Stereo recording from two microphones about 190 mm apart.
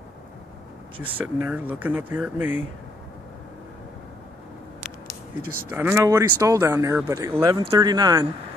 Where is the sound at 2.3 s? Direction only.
40° left (ahead or behind).